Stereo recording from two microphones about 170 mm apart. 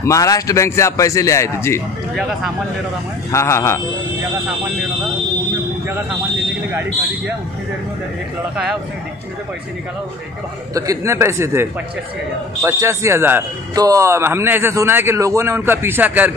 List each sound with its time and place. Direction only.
0.0 s a man's voice: 20° left (ahead or behind)
3.3 s a man's voice: 15° left (ahead or behind)
6.7 s a man's voice: 10° right (ahead or behind)
10.7 s a man's voice: 15° right (ahead or behind)